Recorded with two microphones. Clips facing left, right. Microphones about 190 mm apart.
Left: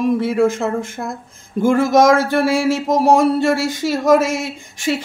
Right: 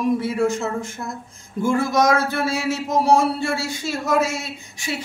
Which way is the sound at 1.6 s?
90° left.